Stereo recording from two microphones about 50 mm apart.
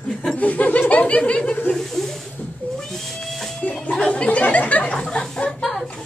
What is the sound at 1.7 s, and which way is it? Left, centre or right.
Speech, centre.